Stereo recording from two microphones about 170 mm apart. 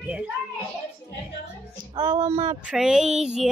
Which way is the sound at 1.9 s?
20° right (ahead or behind).